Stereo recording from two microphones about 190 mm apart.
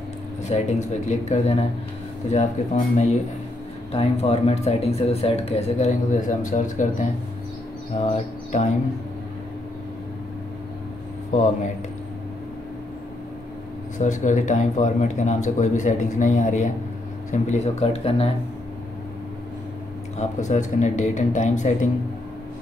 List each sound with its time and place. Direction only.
0.5 s speech: 40° left (ahead or behind)
13.9 s speech: 40° left (ahead or behind)
20.2 s speech: 40° left (ahead or behind)